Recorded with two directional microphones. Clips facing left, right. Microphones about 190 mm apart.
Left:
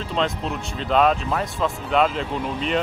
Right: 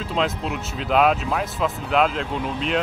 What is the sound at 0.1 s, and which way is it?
Speech, 5° right (ahead or behind).